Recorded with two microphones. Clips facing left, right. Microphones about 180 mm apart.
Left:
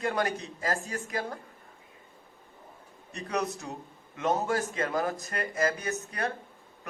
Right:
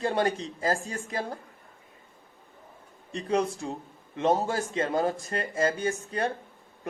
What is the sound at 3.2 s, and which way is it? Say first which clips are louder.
A man's voice: right 5 dB; 30° right (ahead or behind).